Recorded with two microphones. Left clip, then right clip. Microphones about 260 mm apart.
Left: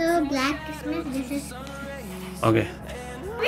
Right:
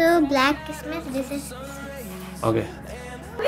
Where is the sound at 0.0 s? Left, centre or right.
Right.